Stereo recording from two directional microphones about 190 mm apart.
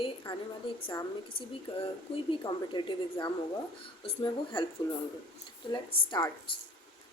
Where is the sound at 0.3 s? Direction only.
25° left (ahead or behind).